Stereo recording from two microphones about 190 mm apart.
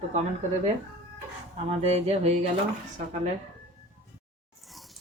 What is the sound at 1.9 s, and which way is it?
Speech, 35° right (ahead or behind).